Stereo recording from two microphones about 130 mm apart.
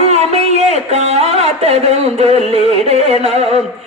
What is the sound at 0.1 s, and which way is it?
A man's voice, 55° right (ahead or behind).